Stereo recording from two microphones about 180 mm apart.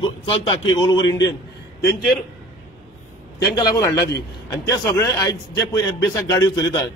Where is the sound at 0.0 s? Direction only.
30° left (ahead or behind).